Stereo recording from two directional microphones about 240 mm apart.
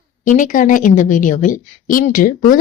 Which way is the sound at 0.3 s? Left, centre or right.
Left.